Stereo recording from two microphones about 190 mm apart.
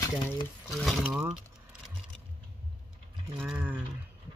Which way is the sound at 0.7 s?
Centre (ahead or behind).